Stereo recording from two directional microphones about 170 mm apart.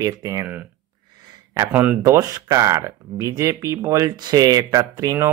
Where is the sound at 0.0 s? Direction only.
20° right (ahead or behind).